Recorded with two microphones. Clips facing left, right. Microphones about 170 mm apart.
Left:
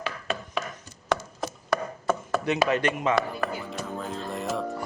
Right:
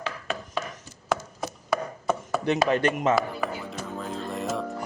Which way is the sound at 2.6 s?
35° right (ahead or behind).